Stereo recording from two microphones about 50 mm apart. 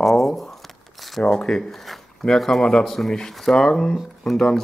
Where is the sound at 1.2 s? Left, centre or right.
Centre.